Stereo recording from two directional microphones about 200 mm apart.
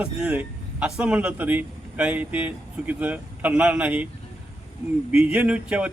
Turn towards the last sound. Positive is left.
turn(degrees=-5)  # may be behind; listen again after turning